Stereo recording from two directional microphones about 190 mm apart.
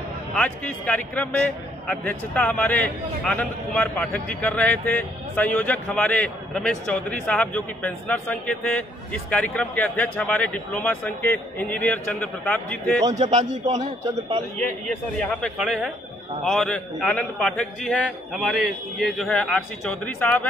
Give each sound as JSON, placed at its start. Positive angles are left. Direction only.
{"t": 0.3, "sound": "a man's voice", "side_deg": 5}
{"t": 13.5, "sound": "a man's voice", "side_deg": -40}
{"t": 15.1, "sound": "a man's voice", "side_deg": 0}